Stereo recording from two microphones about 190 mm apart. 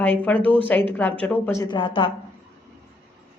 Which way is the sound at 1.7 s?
25° left (ahead or behind).